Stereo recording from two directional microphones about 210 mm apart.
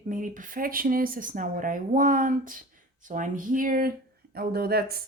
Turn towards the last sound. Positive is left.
turn(degrees=-45)  # may be behind; listen again after turning